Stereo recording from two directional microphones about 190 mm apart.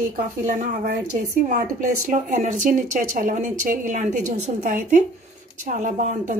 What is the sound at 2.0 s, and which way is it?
Speech, 40° right (ahead or behind).